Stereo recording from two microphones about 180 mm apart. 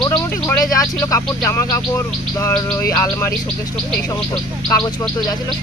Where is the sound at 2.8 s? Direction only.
15° left (ahead or behind).